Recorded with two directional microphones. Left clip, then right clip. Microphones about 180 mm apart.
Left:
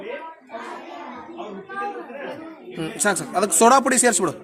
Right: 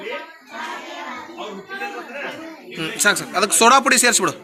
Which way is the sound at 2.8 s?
25° left (ahead or behind).